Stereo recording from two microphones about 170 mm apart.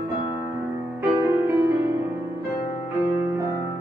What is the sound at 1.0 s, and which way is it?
Music, 15° right (ahead or behind).